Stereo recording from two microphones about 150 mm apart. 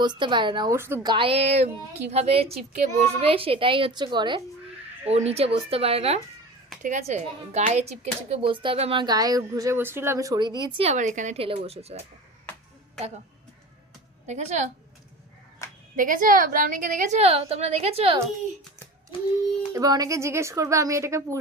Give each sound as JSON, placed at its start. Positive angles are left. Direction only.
{"t": 0.0, "sound": "speech", "side_deg": -30}
{"t": 0.7, "sound": "speech", "side_deg": -15}
{"t": 1.0, "sound": "speech", "side_deg": -35}
{"t": 5.0, "sound": "speech", "side_deg": -45}
{"t": 6.8, "sound": "speech", "side_deg": -50}
{"t": 10.8, "sound": "a woman's voice", "side_deg": -55}
{"t": 11.3, "sound": "a woman's voice", "side_deg": -40}
{"t": 14.3, "sound": "a woman's voice", "side_deg": -50}
{"t": 16.0, "sound": "a woman's voice", "side_deg": -65}
{"t": 19.1, "sound": "a sound", "side_deg": 35}
{"t": 19.7, "sound": "speech", "side_deg": -25}